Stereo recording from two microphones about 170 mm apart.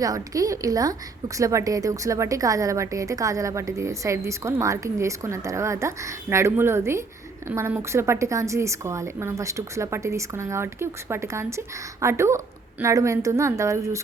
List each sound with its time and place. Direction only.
0.0 s a woman's voice: 20° right (ahead or behind)